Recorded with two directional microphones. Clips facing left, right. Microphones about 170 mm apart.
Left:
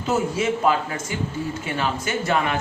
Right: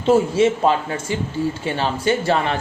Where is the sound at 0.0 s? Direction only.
30° right (ahead or behind).